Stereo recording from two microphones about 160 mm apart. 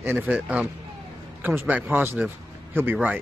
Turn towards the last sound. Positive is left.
turn(degrees=-10)  # may be behind; listen again after turning